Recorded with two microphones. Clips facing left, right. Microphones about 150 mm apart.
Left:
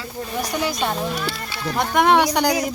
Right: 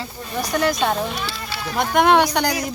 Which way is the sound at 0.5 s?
5° left (ahead or behind).